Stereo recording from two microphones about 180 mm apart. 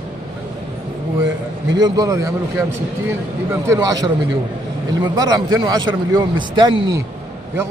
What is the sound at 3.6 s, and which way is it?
Speech, 20° right (ahead or behind).